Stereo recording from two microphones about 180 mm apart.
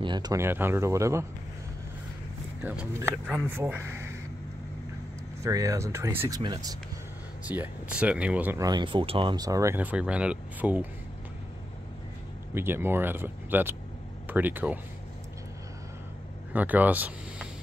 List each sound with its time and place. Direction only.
0.0 s speech: 25° right (ahead or behind)
2.6 s speech: 10° right (ahead or behind)
5.4 s speech: 15° right (ahead or behind)
7.4 s speech: 10° right (ahead or behind)
8.6 s speech: 25° right (ahead or behind); by 10.9 s 10° right (ahead or behind)
12.5 s speech: 10° right (ahead or behind)
16.5 s speech: 10° right (ahead or behind)